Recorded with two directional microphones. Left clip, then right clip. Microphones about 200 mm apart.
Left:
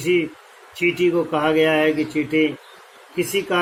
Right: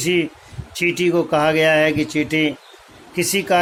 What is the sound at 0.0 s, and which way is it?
Speech, 50° right (ahead or behind).